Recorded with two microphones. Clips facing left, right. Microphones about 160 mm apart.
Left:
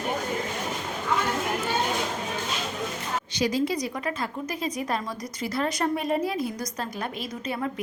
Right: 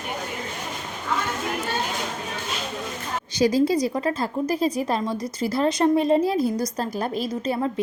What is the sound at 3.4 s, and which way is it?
Speech, 35° right (ahead or behind).